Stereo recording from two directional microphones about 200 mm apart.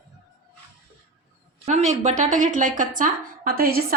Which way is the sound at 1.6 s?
35° right (ahead or behind).